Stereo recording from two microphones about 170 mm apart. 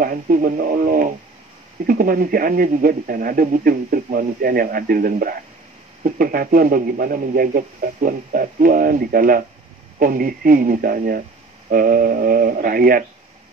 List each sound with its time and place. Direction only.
0.0 s speech: 55° right (ahead or behind)